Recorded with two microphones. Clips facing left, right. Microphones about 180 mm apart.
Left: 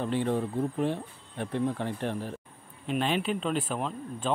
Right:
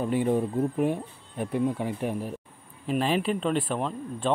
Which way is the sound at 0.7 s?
10° right (ahead or behind).